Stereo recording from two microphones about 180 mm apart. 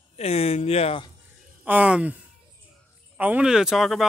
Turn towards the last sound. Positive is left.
turn(degrees=0)  # may be behind; listen again after turning